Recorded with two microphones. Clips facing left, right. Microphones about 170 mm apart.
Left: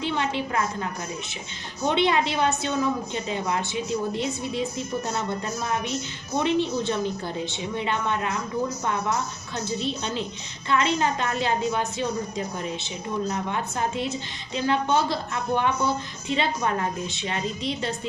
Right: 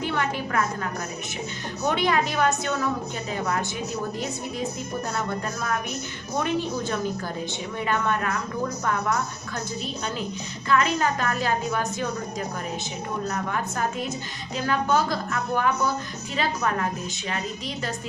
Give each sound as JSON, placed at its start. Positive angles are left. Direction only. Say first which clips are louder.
{"t": 0.1, "sound": "a woman's voice", "louder": "left 1 dB", "side_deg": 20}
{"t": 1.9, "sound": "a woman's voice", "louder": "left 2 dB", "side_deg": 25}
{"t": 6.4, "sound": "a woman's voice", "louder": "left 3 dB", "side_deg": 25}
{"t": 10.7, "sound": "a woman's voice", "louder": "even", "side_deg": 25}
{"t": 13.3, "sound": "a woman's voice", "louder": "even", "side_deg": 25}